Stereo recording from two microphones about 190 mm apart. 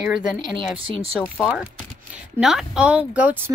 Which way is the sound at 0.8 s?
30° right (ahead or behind).